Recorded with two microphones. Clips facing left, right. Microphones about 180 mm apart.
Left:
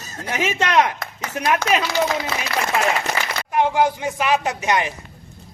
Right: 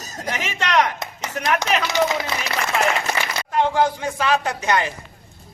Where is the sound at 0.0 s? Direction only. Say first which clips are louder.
Even; 40° right (ahead or behind).